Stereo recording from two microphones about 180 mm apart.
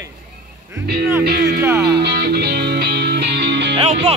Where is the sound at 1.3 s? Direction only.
65° right (ahead or behind).